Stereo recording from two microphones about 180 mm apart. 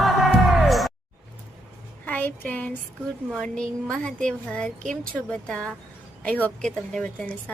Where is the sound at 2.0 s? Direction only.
10° left (ahead or behind).